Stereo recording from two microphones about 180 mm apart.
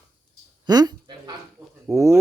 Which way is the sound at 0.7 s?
20° right (ahead or behind).